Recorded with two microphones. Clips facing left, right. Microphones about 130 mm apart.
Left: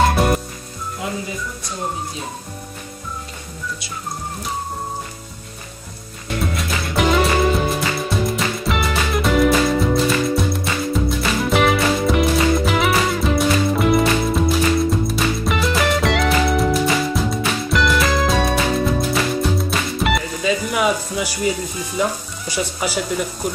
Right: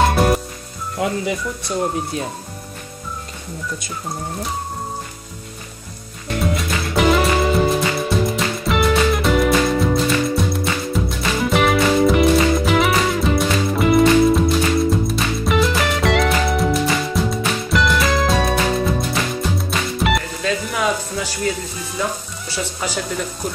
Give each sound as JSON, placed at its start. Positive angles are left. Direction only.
{"t": 0.1, "sound": "music", "side_deg": 0}
{"t": 1.0, "sound": "speech", "side_deg": -60}
{"t": 6.4, "sound": "music", "side_deg": 0}
{"t": 22.5, "sound": "speech", "side_deg": 10}